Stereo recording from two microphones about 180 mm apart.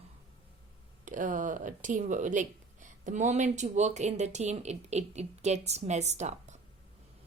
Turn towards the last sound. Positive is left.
turn(degrees=-40)  # may be behind; listen again after turning